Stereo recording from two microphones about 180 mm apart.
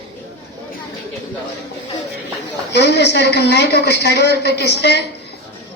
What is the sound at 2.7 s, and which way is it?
A woman's voice, 70° left (ahead or behind).